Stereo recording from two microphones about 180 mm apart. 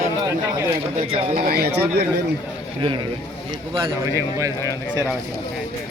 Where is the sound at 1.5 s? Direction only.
60° right (ahead or behind).